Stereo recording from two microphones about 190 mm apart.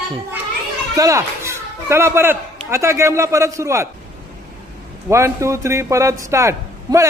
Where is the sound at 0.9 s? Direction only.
15° right (ahead or behind).